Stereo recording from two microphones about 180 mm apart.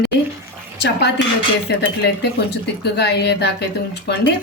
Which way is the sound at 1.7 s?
70° left (ahead or behind).